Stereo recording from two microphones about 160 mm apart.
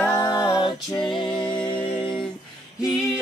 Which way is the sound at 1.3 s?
5° left (ahead or behind).